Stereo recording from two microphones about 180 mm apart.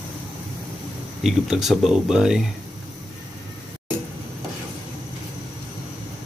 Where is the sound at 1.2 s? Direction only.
Centre (ahead or behind).